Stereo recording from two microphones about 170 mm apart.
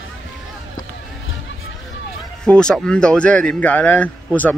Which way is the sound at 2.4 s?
5° left (ahead or behind).